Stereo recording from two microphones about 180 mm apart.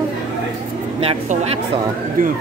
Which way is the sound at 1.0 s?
35° right (ahead or behind).